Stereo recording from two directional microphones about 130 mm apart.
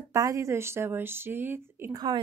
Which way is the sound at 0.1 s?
25° right (ahead or behind).